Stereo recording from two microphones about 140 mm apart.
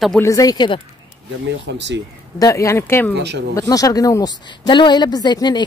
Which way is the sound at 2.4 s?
20° left (ahead or behind).